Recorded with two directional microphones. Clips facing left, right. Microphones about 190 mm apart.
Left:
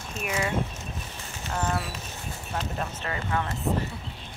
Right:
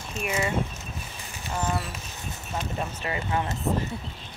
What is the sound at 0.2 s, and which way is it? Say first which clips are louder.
Speech: right 1 dB; centre (ahead or behind).